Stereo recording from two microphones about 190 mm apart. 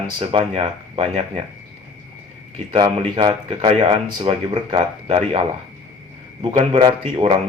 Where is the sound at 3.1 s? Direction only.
30° right (ahead or behind).